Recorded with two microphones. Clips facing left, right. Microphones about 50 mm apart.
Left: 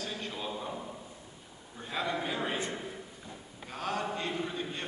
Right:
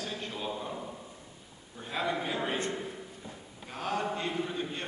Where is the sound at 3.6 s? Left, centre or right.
Centre.